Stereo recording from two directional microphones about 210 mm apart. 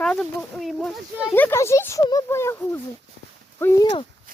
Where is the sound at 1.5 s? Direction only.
10° left (ahead or behind).